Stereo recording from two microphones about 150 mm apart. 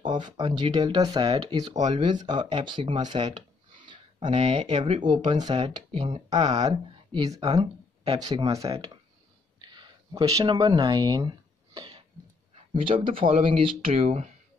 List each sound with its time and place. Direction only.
0.0 s speech: 30° right (ahead or behind)
4.3 s speech: 50° right (ahead or behind)
4.6 s speech: 35° right (ahead or behind)
5.2 s speech: 50° right (ahead or behind)
5.5 s speech: 30° right (ahead or behind)
9.6 s a sound: 30° right (ahead or behind)
12.7 s speech: 35° right (ahead or behind)